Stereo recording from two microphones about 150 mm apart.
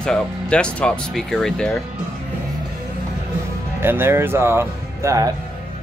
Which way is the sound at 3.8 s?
15° right (ahead or behind).